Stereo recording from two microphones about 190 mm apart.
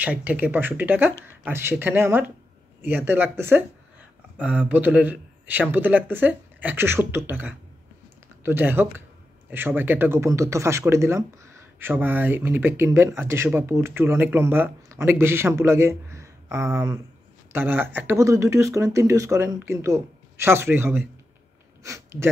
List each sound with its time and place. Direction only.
0.0 s speech: 10° right (ahead or behind)